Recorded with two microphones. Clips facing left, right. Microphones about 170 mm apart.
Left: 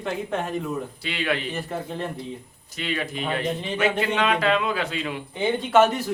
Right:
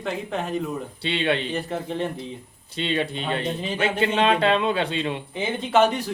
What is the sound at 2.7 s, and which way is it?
Speech, 30° right (ahead or behind).